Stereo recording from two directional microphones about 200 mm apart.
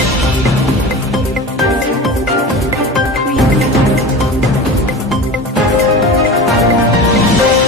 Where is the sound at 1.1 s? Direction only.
Centre (ahead or behind).